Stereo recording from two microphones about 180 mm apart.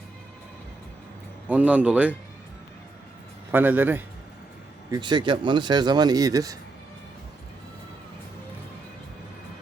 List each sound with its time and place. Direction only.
1.5 s speech: 10° right (ahead or behind)
3.5 s speech: 10° right (ahead or behind)
4.9 s speech: 25° right (ahead or behind)